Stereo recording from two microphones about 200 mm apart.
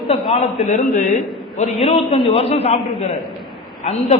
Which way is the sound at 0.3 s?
35° left (ahead or behind).